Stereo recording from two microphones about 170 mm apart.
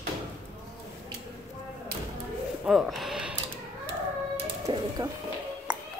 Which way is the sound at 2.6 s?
Centre (ahead or behind).